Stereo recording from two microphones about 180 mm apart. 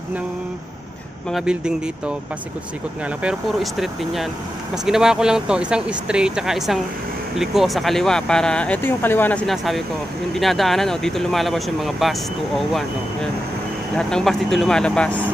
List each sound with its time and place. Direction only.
1.3 s speech: 5° right (ahead or behind)
3.2 s speech: 5° right (ahead or behind)